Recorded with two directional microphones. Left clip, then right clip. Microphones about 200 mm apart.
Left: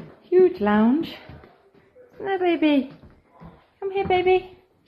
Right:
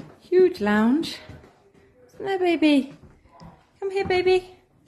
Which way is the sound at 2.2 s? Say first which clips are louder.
Even; 20° right (ahead or behind).